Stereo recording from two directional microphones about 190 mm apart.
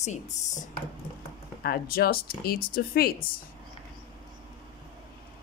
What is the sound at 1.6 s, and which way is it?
Speech, 55° left (ahead or behind).